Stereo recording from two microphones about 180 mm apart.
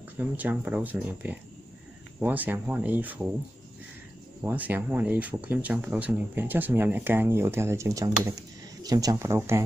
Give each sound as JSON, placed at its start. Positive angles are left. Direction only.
{"t": 0.2, "sound": "speech", "side_deg": -10}
{"t": 4.4, "sound": "speech", "side_deg": -10}